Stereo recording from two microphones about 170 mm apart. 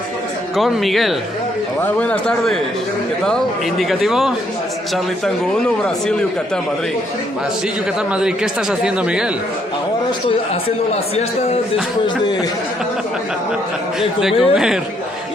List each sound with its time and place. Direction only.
0.5 s speech: centre (ahead or behind)
8.1 s speech: 5° right (ahead or behind)
10.2 s a man's voice: 35° left (ahead or behind)
14.2 s speech: 5° right (ahead or behind)